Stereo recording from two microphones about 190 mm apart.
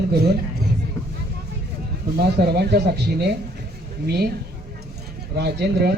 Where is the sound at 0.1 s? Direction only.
60° right (ahead or behind).